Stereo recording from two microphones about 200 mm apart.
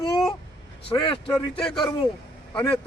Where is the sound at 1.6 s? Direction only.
5° left (ahead or behind).